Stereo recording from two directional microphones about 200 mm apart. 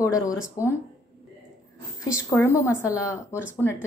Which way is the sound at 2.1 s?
15° left (ahead or behind).